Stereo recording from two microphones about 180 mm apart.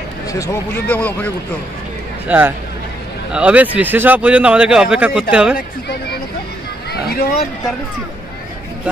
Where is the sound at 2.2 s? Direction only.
10° right (ahead or behind).